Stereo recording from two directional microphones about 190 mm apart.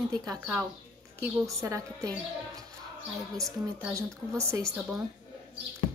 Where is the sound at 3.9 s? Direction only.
15° right (ahead or behind).